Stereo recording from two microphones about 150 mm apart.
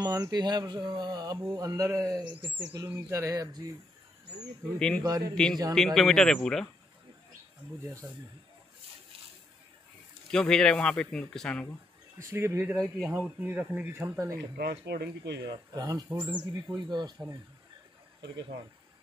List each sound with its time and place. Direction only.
0.0 s speech: 25° right (ahead or behind)
2.4 s speech: 10° right (ahead or behind)
2.9 s speech: 20° right (ahead or behind)
4.7 s speech: 5° left (ahead or behind)
5.0 s speech: 25° right (ahead or behind)
5.3 s speech: 5° left (ahead or behind)
10.3 s speech: 5° left (ahead or behind)
12.2 s speech: 15° right (ahead or behind)
14.6 s speech: 90° right
15.7 s speech: 25° right (ahead or behind)